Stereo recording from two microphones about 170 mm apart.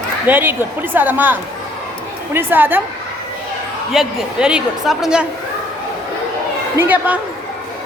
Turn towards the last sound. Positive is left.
turn(degrees=-10)  # may be behind; listen again after turning